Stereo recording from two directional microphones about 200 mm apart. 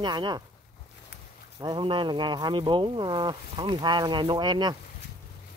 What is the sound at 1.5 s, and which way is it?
Speech, 20° right (ahead or behind).